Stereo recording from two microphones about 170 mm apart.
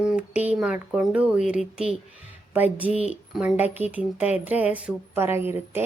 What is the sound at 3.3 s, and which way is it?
A woman's voice, 10° right (ahead or behind).